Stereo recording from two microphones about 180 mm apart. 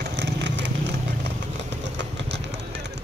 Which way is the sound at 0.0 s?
75° right (ahead or behind).